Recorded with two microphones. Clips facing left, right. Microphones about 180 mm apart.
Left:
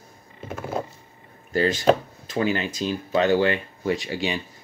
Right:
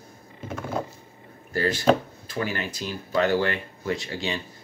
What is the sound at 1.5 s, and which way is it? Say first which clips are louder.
Speech: left 2 dB; 20° left (ahead or behind).